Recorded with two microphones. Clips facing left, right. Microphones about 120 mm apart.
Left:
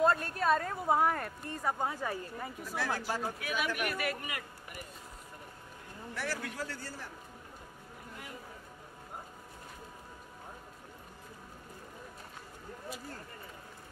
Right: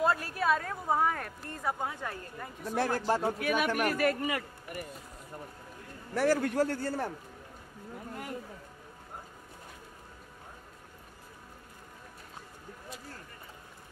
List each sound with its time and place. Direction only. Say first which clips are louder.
0.0 s a woman's voice: even; 5° right (ahead or behind)
2.6 s a man's voice: right 6 dB; 50° right (ahead or behind)
3.8 s speech: right 7 dB; 40° right (ahead or behind)
6.1 s a man's voice: right 12 dB; 45° right (ahead or behind)